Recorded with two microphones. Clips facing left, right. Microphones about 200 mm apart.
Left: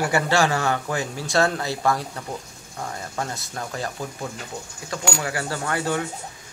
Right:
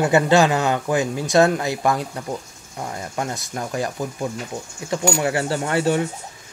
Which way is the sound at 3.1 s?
15° right (ahead or behind).